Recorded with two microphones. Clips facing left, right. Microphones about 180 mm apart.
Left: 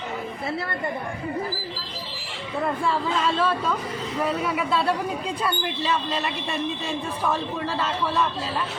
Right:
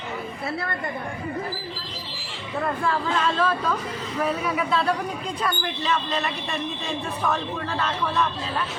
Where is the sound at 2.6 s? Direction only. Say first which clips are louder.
Left 1 dB; 5° left (ahead or behind).